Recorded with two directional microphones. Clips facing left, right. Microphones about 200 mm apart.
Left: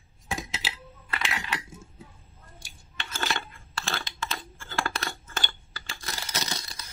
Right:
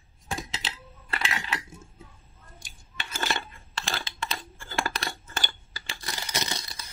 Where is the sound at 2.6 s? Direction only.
15° right (ahead or behind).